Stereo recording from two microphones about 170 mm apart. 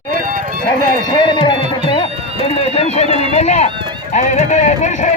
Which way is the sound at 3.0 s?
30° right (ahead or behind).